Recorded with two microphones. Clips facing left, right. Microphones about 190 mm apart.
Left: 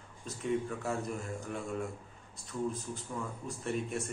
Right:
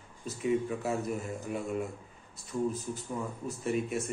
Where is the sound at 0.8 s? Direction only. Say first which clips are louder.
Right 3 dB; 5° right (ahead or behind).